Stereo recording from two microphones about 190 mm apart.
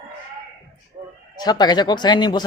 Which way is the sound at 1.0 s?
40° right (ahead or behind).